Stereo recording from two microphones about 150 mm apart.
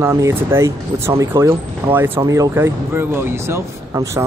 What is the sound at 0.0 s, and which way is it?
Speech, 15° right (ahead or behind).